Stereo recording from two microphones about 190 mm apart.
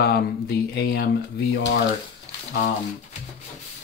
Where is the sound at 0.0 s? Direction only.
55° left (ahead or behind).